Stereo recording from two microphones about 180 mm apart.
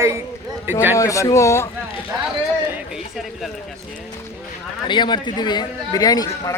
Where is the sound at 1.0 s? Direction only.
15° left (ahead or behind).